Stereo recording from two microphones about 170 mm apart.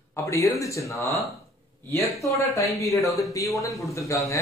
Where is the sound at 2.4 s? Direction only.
20° left (ahead or behind).